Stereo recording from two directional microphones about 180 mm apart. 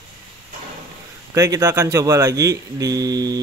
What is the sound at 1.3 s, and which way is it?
Speech, 15° right (ahead or behind).